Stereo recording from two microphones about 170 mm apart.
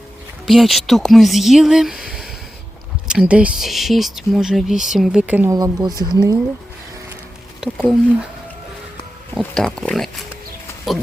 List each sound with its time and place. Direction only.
0.4 s speech: centre (ahead or behind)
5.5 s speech: 20° right (ahead or behind)
7.6 s speech: centre (ahead or behind)
9.4 s speech: 5° left (ahead or behind)